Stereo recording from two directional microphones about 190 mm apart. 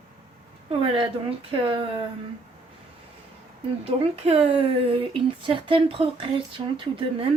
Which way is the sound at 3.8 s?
30° right (ahead or behind).